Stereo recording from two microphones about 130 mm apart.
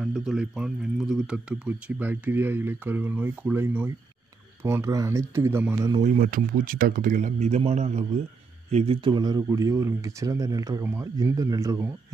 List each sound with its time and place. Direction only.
0.0 s speech: 5° right (ahead or behind)
6.0 s speech: 90° right; by 8.2 s 60° right (ahead or behind)
9.0 s speech: 35° right (ahead or behind)